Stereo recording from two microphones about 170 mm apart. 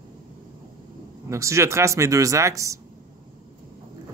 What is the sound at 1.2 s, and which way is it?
Speech, 15° right (ahead or behind).